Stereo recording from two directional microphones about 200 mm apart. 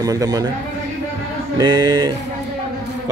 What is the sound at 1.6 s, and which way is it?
Speech, 20° right (ahead or behind).